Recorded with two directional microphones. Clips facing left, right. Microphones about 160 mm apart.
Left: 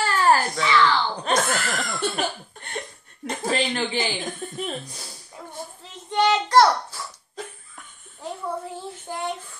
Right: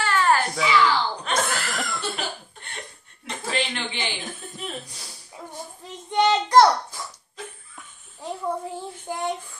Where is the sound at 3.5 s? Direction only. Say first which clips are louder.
Left 4 dB; 40° left (ahead or behind).